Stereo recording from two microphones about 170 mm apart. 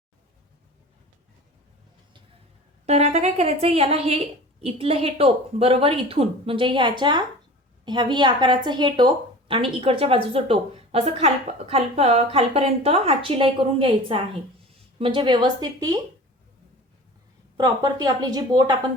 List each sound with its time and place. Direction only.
2.8 s a woman's voice: 40° right (ahead or behind); by 16.0 s 20° right (ahead or behind)
17.6 s a woman's voice: 20° right (ahead or behind)